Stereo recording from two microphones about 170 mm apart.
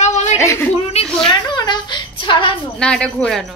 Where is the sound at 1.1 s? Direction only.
5° left (ahead or behind).